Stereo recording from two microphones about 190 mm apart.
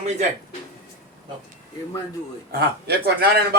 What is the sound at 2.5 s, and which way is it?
Speech, 55° right (ahead or behind).